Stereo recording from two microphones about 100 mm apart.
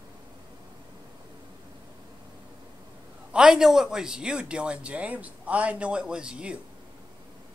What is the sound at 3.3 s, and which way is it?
Speech, 5° right (ahead or behind).